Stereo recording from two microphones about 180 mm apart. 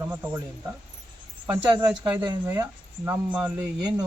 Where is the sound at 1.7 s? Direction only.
25° right (ahead or behind).